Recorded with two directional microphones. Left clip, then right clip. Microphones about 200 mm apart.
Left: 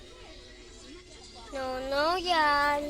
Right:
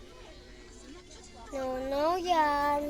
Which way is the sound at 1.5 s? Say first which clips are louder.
Left 2 dB; 15° right (ahead or behind).